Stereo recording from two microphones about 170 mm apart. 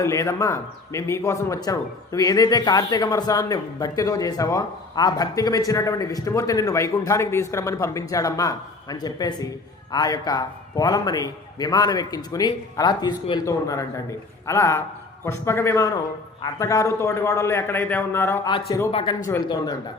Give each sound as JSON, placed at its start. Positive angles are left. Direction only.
{"t": 0.0, "sound": "a man's voice", "side_deg": 15}
{"t": 18.9, "sound": "speech", "side_deg": 35}